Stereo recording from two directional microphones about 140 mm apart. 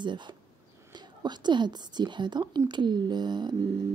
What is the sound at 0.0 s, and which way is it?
Speech, 35° right (ahead or behind).